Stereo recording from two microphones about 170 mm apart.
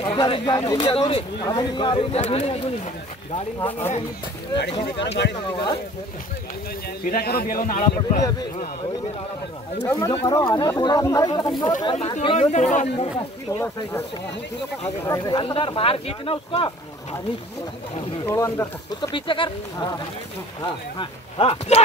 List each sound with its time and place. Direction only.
0.0 s speech: 25° left (ahead or behind)
0.8 s speech: 35° left (ahead or behind)
1.4 s speech: 25° left (ahead or behind); by 2.6 s 40° left (ahead or behind)
3.5 s speech: 15° left (ahead or behind)
4.8 s speech: 90° left
7.2 s a man's voice: 65° left (ahead or behind)
8.2 s speech: 20° left (ahead or behind)
9.8 s speech: 15° left (ahead or behind); by 13.1 s 45° left (ahead or behind)
13.5 s speech: 15° left (ahead or behind)
15.0 s speech: 20° left (ahead or behind)
17.9 s speech: 35° left (ahead or behind)
18.3 s speech: 15° left (ahead or behind)
18.9 s speech: 30° left (ahead or behind)